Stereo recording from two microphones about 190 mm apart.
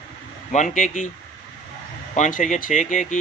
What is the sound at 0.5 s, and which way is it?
Speech, 40° left (ahead or behind).